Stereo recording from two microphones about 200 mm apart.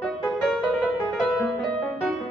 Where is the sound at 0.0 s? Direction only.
Centre (ahead or behind).